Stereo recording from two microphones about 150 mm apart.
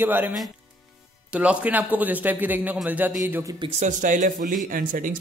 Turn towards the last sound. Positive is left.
turn(degrees=-65)  # may be behind; listen again after turning